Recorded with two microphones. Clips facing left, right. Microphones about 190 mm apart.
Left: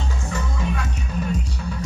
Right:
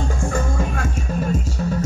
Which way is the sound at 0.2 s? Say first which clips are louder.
Right 4 dB; 50° right (ahead or behind).